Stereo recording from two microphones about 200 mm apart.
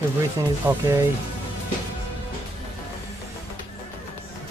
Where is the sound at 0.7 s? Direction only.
10° right (ahead or behind).